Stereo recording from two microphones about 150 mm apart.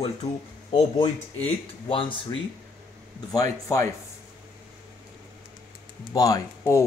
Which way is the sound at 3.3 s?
25° left (ahead or behind).